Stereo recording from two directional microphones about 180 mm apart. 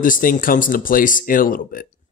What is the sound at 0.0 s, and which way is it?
Speech, 50° left (ahead or behind).